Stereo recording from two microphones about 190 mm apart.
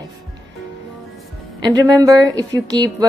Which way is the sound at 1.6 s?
20° right (ahead or behind).